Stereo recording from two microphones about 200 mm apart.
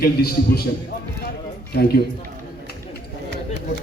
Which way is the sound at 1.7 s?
50° left (ahead or behind).